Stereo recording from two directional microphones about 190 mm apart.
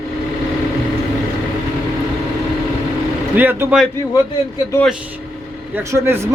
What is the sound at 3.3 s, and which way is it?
Speech, 10° right (ahead or behind).